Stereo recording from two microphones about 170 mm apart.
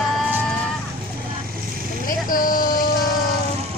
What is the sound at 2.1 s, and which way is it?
Speech, 55° left (ahead or behind).